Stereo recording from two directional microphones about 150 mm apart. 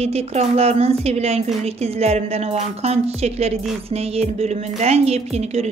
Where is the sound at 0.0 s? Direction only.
45° right (ahead or behind).